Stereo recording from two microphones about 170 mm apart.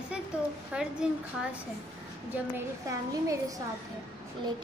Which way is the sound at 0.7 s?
5° right (ahead or behind).